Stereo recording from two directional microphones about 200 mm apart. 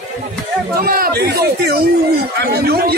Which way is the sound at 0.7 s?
45° right (ahead or behind).